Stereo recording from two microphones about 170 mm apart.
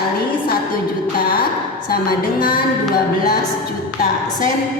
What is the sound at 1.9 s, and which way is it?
Speech, 60° left (ahead or behind).